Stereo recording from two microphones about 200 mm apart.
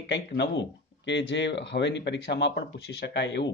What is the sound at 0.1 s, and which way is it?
Speech, 60° left (ahead or behind).